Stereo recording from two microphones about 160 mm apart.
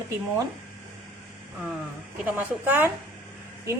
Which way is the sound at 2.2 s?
10° right (ahead or behind).